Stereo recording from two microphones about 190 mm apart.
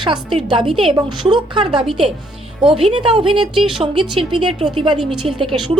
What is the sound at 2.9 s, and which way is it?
Speech, 25° right (ahead or behind).